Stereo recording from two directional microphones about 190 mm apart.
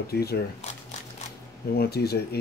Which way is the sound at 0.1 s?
55° left (ahead or behind).